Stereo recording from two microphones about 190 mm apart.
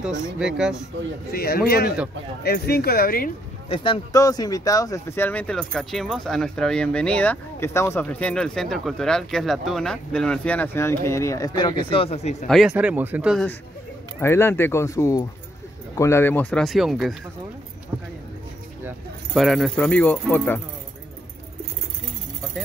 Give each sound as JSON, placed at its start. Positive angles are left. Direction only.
{"t": 0.4, "sound": "speech", "side_deg": -5}
{"t": 1.3, "sound": "speech", "side_deg": 55}
{"t": 3.6, "sound": "speech", "side_deg": 30}
{"t": 12.4, "sound": "speech", "side_deg": 0}
{"t": 14.2, "sound": "speech", "side_deg": 10}
{"t": 18.9, "sound": "speech", "side_deg": 0}